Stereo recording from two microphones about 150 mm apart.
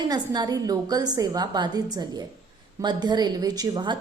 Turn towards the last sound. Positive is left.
turn(degrees=-30)  # may be behind; listen again after turning